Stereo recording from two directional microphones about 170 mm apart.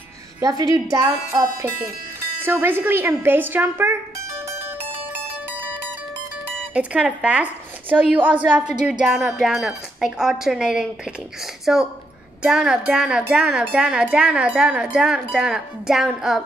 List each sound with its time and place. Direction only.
0.4 s a woman's voice: 20° right (ahead or behind)
6.7 s a woman's voice: 5° right (ahead or behind)
8.8 s wind chime: 5° right (ahead or behind)
11.6 s a woman's voice: 5° right (ahead or behind)
12.4 s wind chime: 5° right (ahead or behind)